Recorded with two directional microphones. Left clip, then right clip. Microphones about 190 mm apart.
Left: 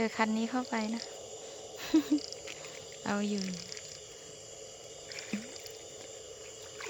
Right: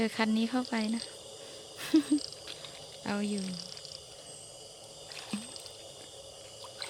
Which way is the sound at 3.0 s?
5° right (ahead or behind).